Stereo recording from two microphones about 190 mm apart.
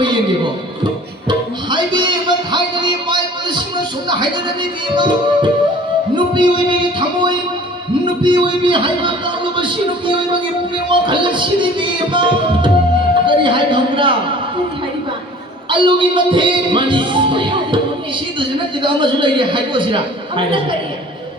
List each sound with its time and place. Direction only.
0.0 s a sound: 25° right (ahead or behind)
1.3 s music: 25° right (ahead or behind)
6.1 s a man's voice: 25° right (ahead or behind)
10.8 s a man's voice: 25° right (ahead or behind)
13.2 s a sound: 25° right (ahead or behind)
15.7 s a man's voice: 25° right (ahead or behind)